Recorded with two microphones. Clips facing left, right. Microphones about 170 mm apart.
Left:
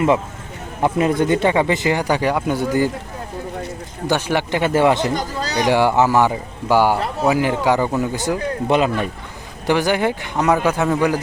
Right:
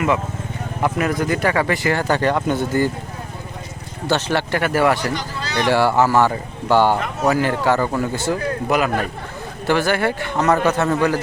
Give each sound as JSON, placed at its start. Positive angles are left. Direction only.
{"t": 0.8, "sound": "speech", "side_deg": 25}
{"t": 4.0, "sound": "speech", "side_deg": 15}
{"t": 5.1, "sound": "a sound", "side_deg": 40}
{"t": 5.5, "sound": "speech", "side_deg": 15}